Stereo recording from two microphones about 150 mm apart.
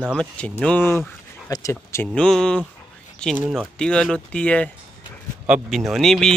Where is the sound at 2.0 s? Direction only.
5° left (ahead or behind).